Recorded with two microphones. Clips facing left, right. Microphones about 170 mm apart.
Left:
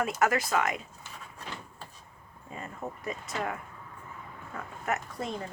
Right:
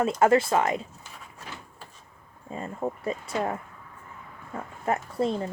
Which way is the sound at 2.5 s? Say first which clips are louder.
Right 7 dB; 30° right (ahead or behind).